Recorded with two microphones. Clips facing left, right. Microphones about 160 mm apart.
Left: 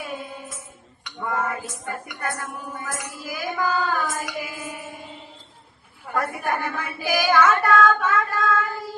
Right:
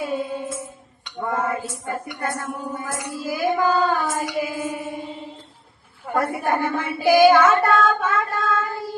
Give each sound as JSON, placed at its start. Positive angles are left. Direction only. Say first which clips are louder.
{"t": 0.1, "sound": "music", "louder": "right 8 dB", "side_deg": -30}
{"t": 1.0, "sound": "speech", "louder": "right 2 dB", "side_deg": -30}
{"t": 6.1, "sound": "child singing", "louder": "right 4 dB", "side_deg": -25}